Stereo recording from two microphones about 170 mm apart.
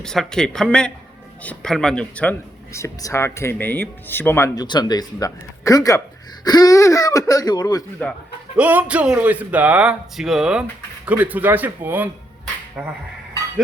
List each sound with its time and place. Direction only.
0.0 s speech: 5° left (ahead or behind)
2.7 s speech: 15° left (ahead or behind)
8.5 s speech: 10° right (ahead or behind)